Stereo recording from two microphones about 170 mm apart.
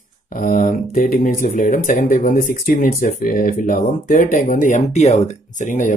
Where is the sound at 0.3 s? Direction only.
45° left (ahead or behind).